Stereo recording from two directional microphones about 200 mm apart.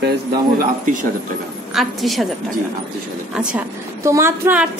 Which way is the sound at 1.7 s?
Centre (ahead or behind).